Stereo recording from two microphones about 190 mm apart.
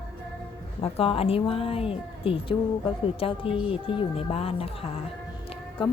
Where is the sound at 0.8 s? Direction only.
30° left (ahead or behind).